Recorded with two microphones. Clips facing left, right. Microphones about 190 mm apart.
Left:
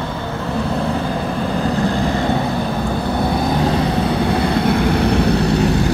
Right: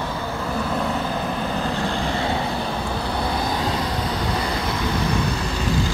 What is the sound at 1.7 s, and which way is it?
Vehicle, 40° left (ahead or behind).